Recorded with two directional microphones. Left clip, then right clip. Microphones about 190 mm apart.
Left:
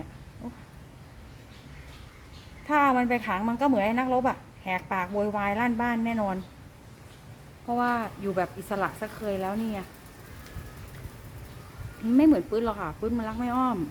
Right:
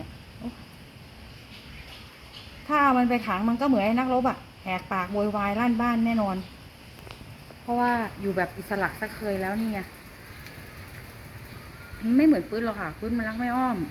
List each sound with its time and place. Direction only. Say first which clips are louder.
2.6 s speech: right 1 dB; 20° left (ahead or behind)
7.8 s speech: right 2 dB; 5° left (ahead or behind)
12.1 s speech: even; 15° left (ahead or behind)